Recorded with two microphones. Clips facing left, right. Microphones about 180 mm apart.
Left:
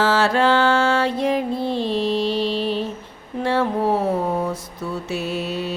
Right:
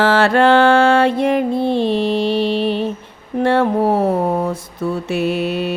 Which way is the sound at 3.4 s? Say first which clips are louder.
Right 5 dB; 60° right (ahead or behind).